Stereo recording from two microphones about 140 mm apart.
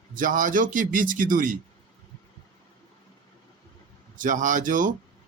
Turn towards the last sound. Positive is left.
turn(degrees=-70)  # may be behind; listen again after turning